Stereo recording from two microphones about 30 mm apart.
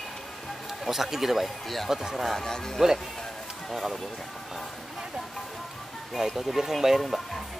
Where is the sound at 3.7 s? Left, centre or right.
Centre.